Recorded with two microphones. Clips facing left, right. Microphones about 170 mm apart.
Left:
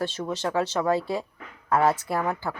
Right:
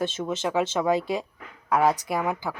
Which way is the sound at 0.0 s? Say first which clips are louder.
Right 1 dB; 20° right (ahead or behind).